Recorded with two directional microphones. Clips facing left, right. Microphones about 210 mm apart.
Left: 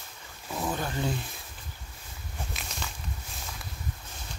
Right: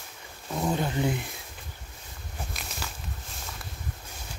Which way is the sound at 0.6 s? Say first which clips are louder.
Right 4 dB; 20° right (ahead or behind).